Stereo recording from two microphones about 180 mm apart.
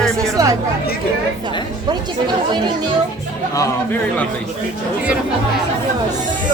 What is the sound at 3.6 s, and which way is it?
Speech, 10° left (ahead or behind).